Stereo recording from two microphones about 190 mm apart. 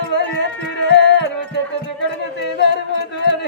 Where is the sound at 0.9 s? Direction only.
65° left (ahead or behind).